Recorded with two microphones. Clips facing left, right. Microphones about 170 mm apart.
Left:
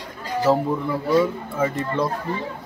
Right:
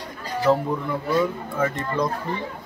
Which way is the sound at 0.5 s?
5° left (ahead or behind).